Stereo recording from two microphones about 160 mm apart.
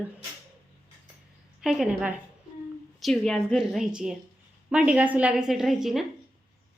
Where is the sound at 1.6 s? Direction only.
5° right (ahead or behind).